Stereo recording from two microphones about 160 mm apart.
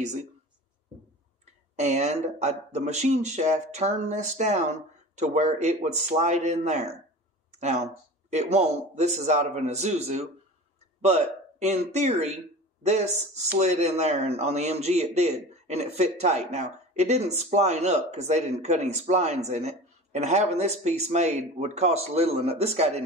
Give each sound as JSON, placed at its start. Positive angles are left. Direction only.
{"t": 0.0, "sound": "a man's voice", "side_deg": -45}
{"t": 1.4, "sound": "a man's voice", "side_deg": -45}
{"t": 11.0, "sound": "a sound", "side_deg": -45}
{"t": 11.9, "sound": "a man's voice", "side_deg": -45}